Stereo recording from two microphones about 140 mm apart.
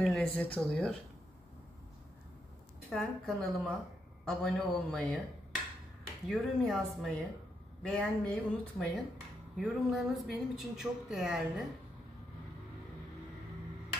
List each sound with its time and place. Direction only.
0.0 s speech: 5° left (ahead or behind)
2.9 s speech: centre (ahead or behind)
6.2 s speech: centre (ahead or behind)